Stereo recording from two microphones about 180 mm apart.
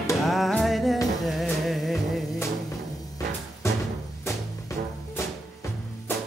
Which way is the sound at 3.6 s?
15° left (ahead or behind).